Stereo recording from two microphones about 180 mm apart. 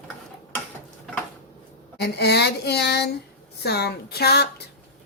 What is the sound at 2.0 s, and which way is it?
A woman's voice, 65° left (ahead or behind).